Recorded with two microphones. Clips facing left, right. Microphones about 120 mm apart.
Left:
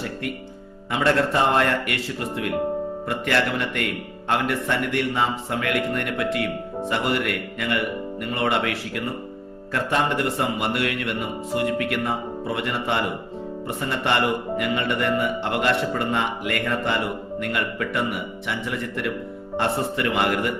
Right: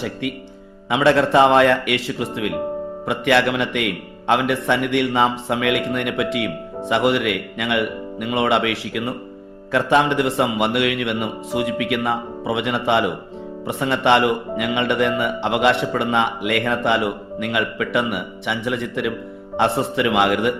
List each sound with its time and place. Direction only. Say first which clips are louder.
0.9 s speech: right 5 dB; 75° right (ahead or behind)
3.1 s speech: right 6 dB; 70° right (ahead or behind)
8.2 s speech: right 5 dB; 90° right
9.7 s speech: right 6 dB; 85° right; by 19.1 s 70° right (ahead or behind)
19.5 s speech: right 5 dB; 85° right